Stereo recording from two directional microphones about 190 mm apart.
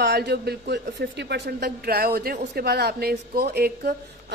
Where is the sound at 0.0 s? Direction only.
60° right (ahead or behind).